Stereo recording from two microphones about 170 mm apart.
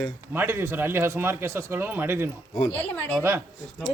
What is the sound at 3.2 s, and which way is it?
Speech, 15° right (ahead or behind).